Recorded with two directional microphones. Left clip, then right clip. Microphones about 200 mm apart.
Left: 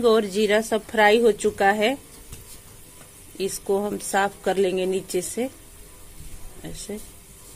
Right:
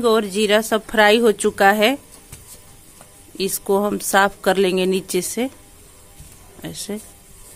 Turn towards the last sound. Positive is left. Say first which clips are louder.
# right 5 dB
turn(degrees=-25)  # may be behind; listen again after turning